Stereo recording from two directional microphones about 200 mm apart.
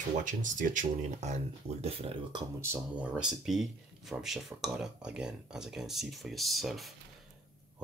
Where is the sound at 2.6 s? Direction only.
10° right (ahead or behind).